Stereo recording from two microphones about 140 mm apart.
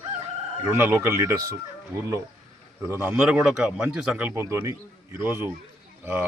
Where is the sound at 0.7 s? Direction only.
15° right (ahead or behind).